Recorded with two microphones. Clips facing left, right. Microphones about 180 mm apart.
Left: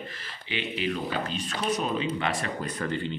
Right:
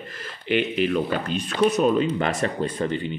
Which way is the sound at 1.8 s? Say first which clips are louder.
Right 8 dB; 45° right (ahead or behind).